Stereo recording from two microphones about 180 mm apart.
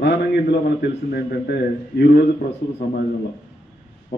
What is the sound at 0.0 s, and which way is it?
Speech, 70° left (ahead or behind).